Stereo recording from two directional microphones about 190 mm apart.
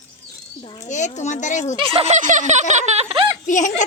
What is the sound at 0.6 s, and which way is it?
Speech, 35° left (ahead or behind).